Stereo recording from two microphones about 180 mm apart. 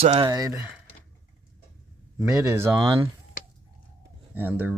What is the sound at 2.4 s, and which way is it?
Speech, 15° right (ahead or behind).